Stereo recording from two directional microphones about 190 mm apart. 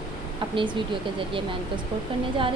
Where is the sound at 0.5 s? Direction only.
25° right (ahead or behind).